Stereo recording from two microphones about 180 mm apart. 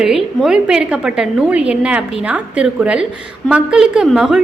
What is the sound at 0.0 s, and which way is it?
A woman's voice, centre (ahead or behind).